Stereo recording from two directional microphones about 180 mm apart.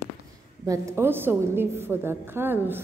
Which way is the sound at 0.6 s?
15° right (ahead or behind).